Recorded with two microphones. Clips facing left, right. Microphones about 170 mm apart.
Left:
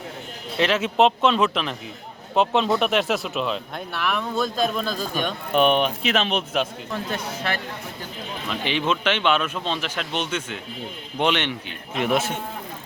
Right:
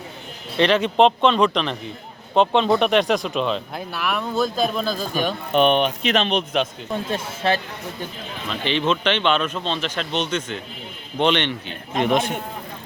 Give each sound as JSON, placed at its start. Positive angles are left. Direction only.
{"t": 0.5, "sound": "speech", "side_deg": 5}
{"t": 6.9, "sound": "speech", "side_deg": -25}
{"t": 8.4, "sound": "speech", "side_deg": 10}